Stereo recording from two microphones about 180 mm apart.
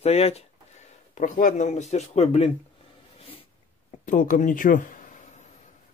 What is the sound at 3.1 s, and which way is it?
Sneeze, 30° left (ahead or behind).